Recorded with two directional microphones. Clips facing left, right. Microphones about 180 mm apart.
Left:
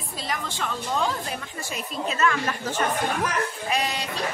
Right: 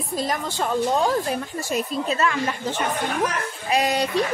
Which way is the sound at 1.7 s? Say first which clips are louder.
Right 6 dB; 35° right (ahead or behind).